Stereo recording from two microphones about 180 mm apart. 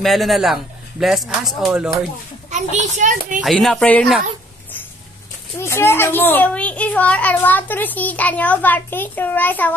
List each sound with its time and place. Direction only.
0.0 s a man's voice: centre (ahead or behind)
2.5 s a child's voice: 40° right (ahead or behind)
3.3 s a man's voice: centre (ahead or behind)
5.6 s a child's voice: 15° left (ahead or behind)